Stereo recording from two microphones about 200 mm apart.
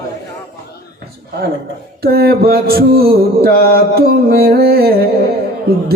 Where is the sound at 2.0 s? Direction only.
50° right (ahead or behind).